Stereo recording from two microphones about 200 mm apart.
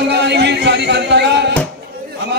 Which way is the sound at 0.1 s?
60° right (ahead or behind).